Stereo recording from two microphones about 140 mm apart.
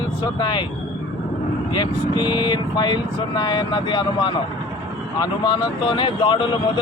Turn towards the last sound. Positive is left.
turn(degrees=35)  # may be behind; listen again after turning